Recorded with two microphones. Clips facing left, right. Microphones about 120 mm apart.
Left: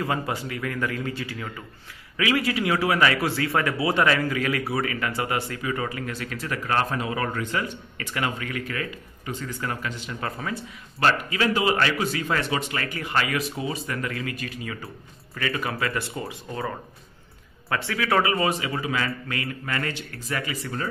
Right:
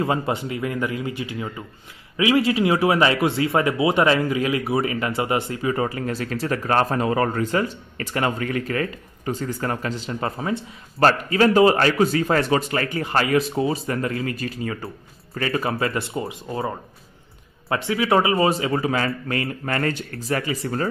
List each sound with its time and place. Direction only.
0.0 s a man's voice: 25° right (ahead or behind)
11.0 s a man's voice: 40° right (ahead or behind)